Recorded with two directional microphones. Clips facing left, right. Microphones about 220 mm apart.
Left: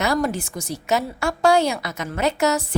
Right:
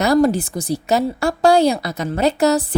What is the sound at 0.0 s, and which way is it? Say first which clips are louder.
A woman's voice: right 7 dB; 35° right (ahead or behind).